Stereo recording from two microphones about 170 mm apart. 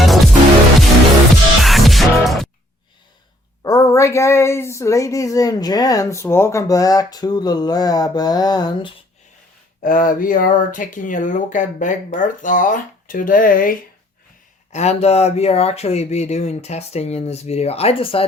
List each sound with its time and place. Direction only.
0.0 s music: centre (ahead or behind)
1.6 s music: centre (ahead or behind)
3.6 s speech: 20° left (ahead or behind)
9.8 s speech: 55° left (ahead or behind)
14.7 s speech: 40° left (ahead or behind)